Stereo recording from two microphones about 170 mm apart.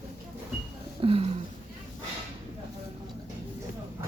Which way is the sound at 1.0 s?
35° right (ahead or behind).